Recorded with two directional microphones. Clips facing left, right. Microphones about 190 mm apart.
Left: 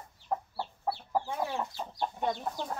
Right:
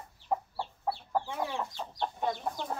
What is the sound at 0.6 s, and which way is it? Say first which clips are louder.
Chicken: even; 5° left (ahead or behind).